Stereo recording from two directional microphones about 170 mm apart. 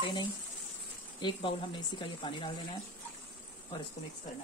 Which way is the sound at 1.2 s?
30° left (ahead or behind).